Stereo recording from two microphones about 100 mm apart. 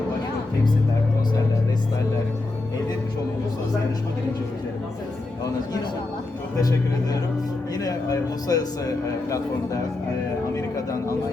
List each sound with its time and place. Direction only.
6.6 s a man's voice: 40° left (ahead or behind)